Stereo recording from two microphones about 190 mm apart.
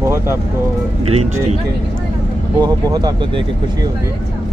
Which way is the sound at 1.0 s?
35° right (ahead or behind).